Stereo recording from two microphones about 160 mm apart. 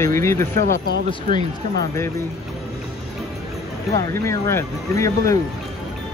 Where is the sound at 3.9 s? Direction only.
20° left (ahead or behind).